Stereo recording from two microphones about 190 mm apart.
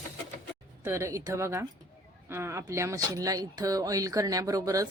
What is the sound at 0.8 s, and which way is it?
A woman's voice, 15° right (ahead or behind).